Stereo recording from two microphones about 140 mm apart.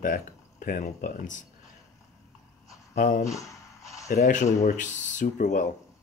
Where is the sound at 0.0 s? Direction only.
90° left; by 1.4 s 75° left (ahead or behind).